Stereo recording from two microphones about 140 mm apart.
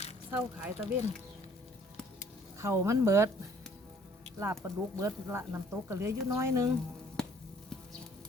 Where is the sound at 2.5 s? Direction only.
20° right (ahead or behind).